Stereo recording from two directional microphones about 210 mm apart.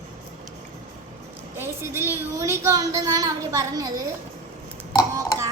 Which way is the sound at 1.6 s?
10° right (ahead or behind).